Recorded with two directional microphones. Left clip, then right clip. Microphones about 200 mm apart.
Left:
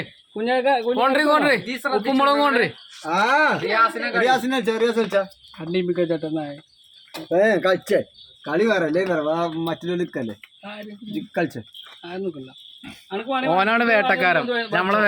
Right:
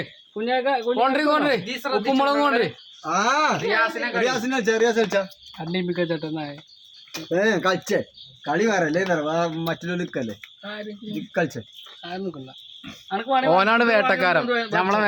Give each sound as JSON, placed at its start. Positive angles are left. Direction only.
{"t": 0.3, "sound": "speech", "side_deg": 30}
{"t": 0.9, "sound": "speech", "side_deg": 10}
{"t": 12.8, "sound": "speech", "side_deg": 0}
{"t": 13.5, "sound": "speech", "side_deg": -10}